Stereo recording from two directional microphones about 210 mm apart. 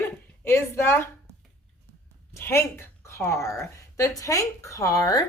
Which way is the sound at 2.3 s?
10° left (ahead or behind).